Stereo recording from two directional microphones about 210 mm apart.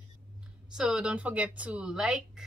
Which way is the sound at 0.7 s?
5° right (ahead or behind).